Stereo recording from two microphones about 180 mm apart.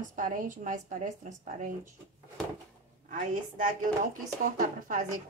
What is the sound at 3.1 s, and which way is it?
A woman's voice, 45° right (ahead or behind).